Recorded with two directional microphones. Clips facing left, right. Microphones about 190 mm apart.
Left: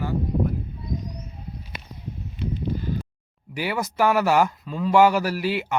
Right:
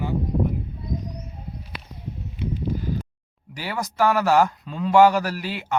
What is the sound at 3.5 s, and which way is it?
Speech, 10° left (ahead or behind).